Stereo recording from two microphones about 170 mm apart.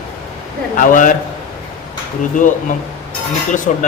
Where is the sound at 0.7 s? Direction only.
50° left (ahead or behind).